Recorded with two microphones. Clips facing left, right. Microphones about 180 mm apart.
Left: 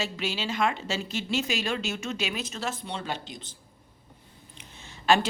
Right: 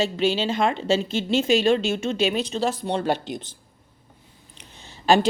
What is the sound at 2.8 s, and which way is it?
Speech, 60° right (ahead or behind).